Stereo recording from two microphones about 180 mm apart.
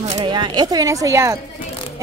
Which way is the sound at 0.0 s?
40° right (ahead or behind).